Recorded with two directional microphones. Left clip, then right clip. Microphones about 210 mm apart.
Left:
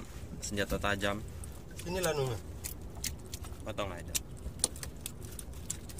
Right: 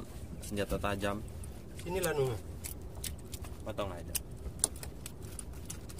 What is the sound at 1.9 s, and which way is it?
Speech, 20° right (ahead or behind).